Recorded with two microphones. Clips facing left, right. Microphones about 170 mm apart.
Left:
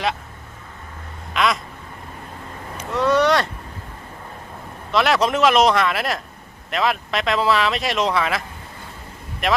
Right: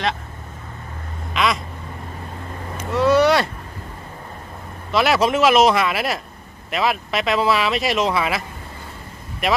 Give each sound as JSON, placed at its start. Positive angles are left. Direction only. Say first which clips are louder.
{"t": 1.3, "sound": "quack", "louder": "even", "side_deg": 0}
{"t": 2.9, "sound": "a sound", "louder": "right 2 dB", "side_deg": -5}
{"t": 4.9, "sound": "speech", "louder": "right 1 dB", "side_deg": -5}